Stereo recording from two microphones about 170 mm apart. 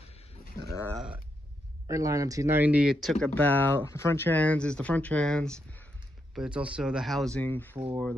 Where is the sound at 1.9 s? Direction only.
20° right (ahead or behind); by 5.9 s 5° left (ahead or behind).